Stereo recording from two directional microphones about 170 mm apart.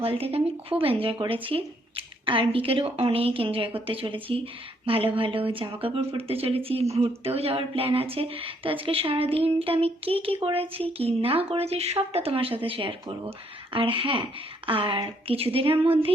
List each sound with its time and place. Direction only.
0.0 s speech: 35° right (ahead or behind)